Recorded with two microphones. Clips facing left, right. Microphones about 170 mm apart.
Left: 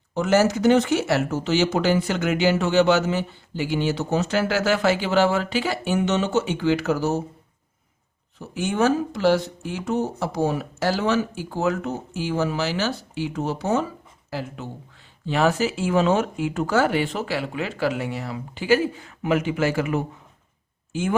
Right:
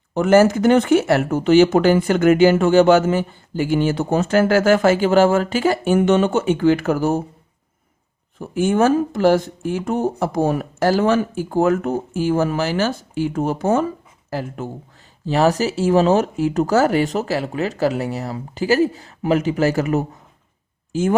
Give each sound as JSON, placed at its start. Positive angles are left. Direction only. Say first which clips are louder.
{"t": 0.1, "sound": "speech", "louder": "right 6 dB", "side_deg": -50}
{"t": 8.4, "sound": "speech", "louder": "right 6 dB", "side_deg": -50}